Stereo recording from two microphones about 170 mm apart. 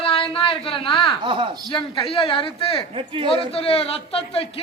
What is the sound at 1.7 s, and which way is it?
A man's voice, 30° left (ahead or behind).